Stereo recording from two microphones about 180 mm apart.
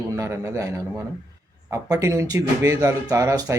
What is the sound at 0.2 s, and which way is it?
Speech, 15° right (ahead or behind).